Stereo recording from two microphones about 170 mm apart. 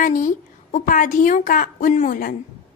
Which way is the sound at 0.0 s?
50° left (ahead or behind).